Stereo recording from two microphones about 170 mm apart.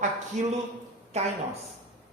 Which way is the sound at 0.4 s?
45° right (ahead or behind).